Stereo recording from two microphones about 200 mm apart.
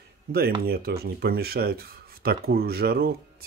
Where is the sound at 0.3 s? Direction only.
50° right (ahead or behind).